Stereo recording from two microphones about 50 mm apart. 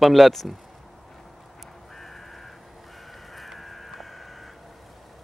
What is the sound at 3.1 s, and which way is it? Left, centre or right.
Vehicle, centre.